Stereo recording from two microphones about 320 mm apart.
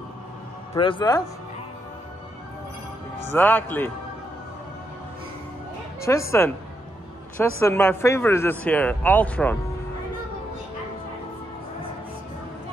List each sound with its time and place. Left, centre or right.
0.7 s speech: centre
3.3 s speech: centre
6.0 s speech: centre